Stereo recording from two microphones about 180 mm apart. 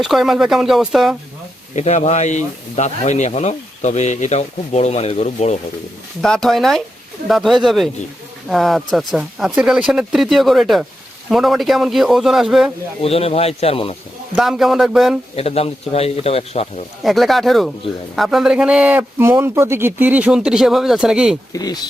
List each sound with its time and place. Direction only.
0.0 s a man's voice: centre (ahead or behind)
1.7 s speech: 40° left (ahead or behind)
6.2 s a man's voice: centre (ahead or behind)
13.0 s speech: 35° left (ahead or behind)
14.3 s a man's voice: centre (ahead or behind)
15.4 s speech: 35° left (ahead or behind)
17.0 s a man's voice: centre (ahead or behind)
21.5 s speech: 20° left (ahead or behind)